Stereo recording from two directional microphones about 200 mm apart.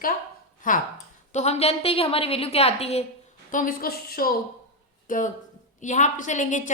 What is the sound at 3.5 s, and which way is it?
A woman's voice, 45° left (ahead or behind).